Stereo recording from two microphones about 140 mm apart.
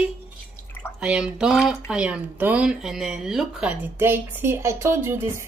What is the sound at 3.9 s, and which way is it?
Speech, 15° right (ahead or behind).